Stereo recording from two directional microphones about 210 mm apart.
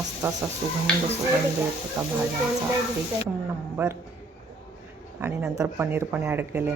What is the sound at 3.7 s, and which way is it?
Speech, 10° right (ahead or behind).